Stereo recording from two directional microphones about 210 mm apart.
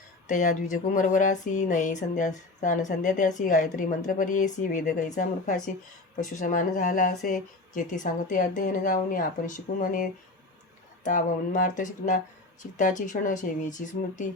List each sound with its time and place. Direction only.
0.3 s speech: 35° left (ahead or behind)